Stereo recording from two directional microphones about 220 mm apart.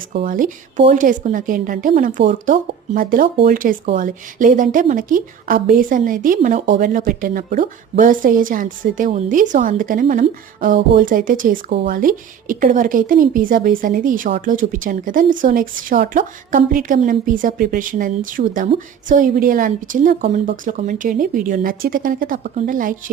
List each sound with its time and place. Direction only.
0.1 s speech: 40° right (ahead or behind)